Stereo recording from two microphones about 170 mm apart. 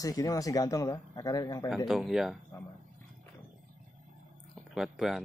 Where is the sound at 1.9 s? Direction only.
5° right (ahead or behind).